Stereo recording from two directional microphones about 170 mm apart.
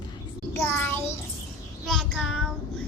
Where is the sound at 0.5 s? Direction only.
10° left (ahead or behind).